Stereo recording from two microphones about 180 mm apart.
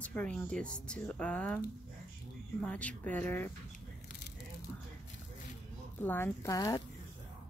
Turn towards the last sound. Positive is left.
turn(degrees=20)  # may be behind; listen again after turning